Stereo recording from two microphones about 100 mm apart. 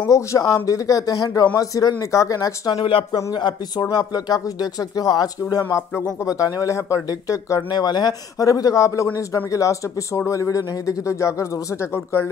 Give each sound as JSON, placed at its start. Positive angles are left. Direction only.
{"t": 0.0, "sound": "speech", "side_deg": 30}
{"t": 2.9, "sound": "speech", "side_deg": 65}
{"t": 3.3, "sound": "speech", "side_deg": 50}